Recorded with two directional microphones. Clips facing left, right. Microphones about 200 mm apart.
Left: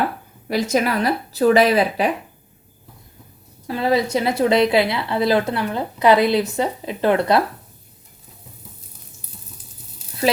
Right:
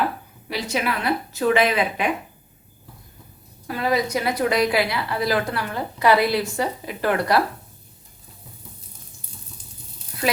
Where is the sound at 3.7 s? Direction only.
25° left (ahead or behind).